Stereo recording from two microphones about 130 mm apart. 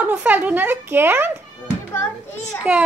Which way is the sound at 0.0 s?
10° right (ahead or behind).